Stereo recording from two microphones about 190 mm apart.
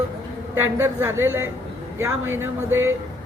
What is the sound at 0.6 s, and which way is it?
Speech, 15° right (ahead or behind).